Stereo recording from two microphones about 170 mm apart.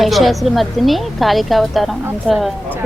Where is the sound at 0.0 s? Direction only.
Centre (ahead or behind).